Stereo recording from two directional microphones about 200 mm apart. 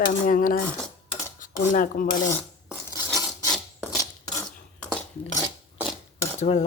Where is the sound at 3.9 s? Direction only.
15° left (ahead or behind).